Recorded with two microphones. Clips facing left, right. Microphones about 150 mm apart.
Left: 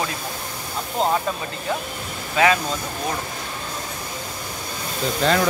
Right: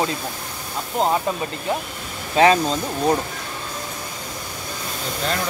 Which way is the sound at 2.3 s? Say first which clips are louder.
Right 3 dB; 30° right (ahead or behind).